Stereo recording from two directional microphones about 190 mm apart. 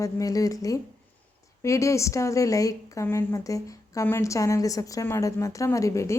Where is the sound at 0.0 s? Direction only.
20° left (ahead or behind).